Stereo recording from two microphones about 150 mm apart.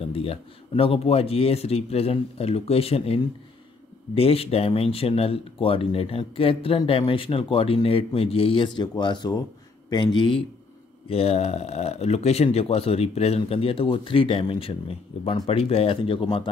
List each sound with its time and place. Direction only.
0.1 s speech: 40° left (ahead or behind)